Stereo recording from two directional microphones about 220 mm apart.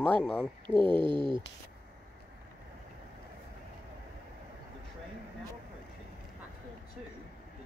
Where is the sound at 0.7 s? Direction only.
25° right (ahead or behind).